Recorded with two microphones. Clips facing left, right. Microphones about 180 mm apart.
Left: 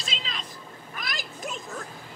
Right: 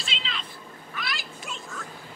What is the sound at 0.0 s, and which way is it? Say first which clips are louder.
Cat: even; 40° left (ahead or behind).